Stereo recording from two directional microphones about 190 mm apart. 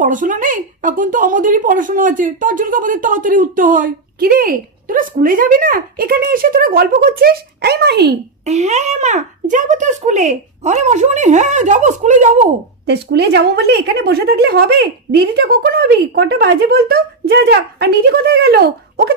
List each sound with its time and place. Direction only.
0.0 s speech: 45° right (ahead or behind); by 8.2 s 60° right (ahead or behind)
8.5 s a child's voice: 35° right (ahead or behind)
12.8 s speech: 60° right (ahead or behind)